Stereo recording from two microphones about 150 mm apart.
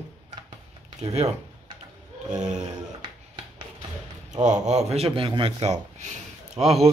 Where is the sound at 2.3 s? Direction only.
50° right (ahead or behind).